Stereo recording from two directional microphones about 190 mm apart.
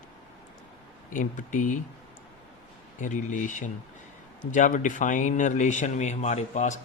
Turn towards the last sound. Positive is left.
turn(degrees=40)  # may be behind; listen again after turning